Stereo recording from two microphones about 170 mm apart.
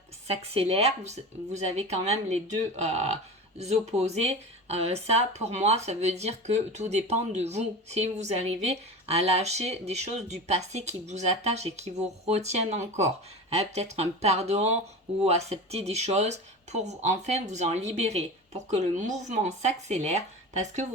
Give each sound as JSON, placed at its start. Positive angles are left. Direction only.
{"t": 0.3, "sound": "speech", "side_deg": -35}